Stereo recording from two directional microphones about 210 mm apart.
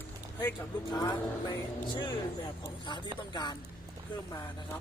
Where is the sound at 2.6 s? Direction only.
20° left (ahead or behind).